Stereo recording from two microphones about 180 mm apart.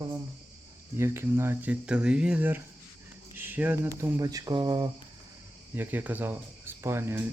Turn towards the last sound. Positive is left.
turn(degrees=-15)  # may be behind; listen again after turning